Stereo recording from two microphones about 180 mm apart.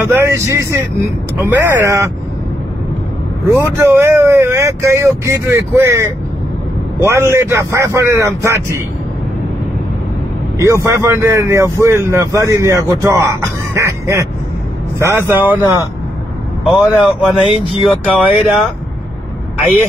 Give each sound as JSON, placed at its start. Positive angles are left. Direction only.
{"t": 0.0, "sound": "a man's voice", "side_deg": -15}
{"t": 3.5, "sound": "a man's voice", "side_deg": -15}
{"t": 10.6, "sound": "a man's voice", "side_deg": -15}
{"t": 16.6, "sound": "speech", "side_deg": 0}